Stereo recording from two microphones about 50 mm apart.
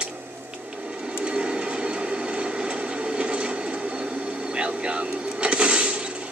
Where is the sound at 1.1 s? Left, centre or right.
Right.